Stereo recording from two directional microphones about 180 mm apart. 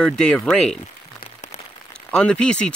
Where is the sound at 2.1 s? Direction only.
5° left (ahead or behind).